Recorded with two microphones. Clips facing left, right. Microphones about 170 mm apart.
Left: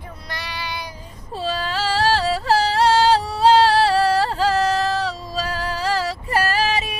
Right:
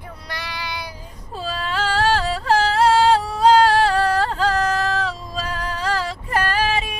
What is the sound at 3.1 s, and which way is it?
Female singing, 35° left (ahead or behind).